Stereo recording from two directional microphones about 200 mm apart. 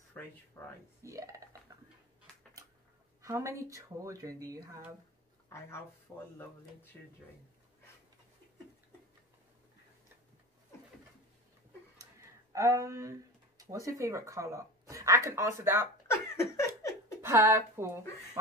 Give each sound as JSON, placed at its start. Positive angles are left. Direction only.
{"t": 0.2, "sound": "speech", "side_deg": 5}
{"t": 1.0, "sound": "speech", "side_deg": -15}
{"t": 3.2, "sound": "speech", "side_deg": -15}
{"t": 6.3, "sound": "speech", "side_deg": 10}
{"t": 12.5, "sound": "speech", "side_deg": -15}
{"t": 16.1, "sound": "laughter", "side_deg": 15}
{"t": 17.2, "sound": "speech", "side_deg": -15}